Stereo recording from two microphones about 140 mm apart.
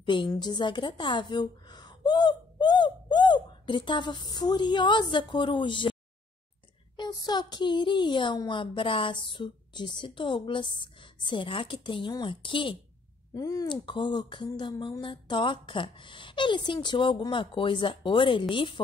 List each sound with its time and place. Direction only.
0.0 s a woman's voice: 35° left (ahead or behind)
7.0 s a woman's voice: 30° left (ahead or behind)
13.3 s a woman's voice: 25° left (ahead or behind)